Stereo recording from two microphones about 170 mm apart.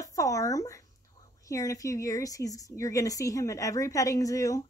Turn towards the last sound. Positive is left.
turn(degrees=20)  # may be behind; listen again after turning